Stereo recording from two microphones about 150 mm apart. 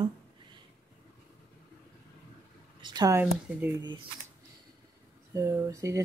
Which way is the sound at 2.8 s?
25° right (ahead or behind).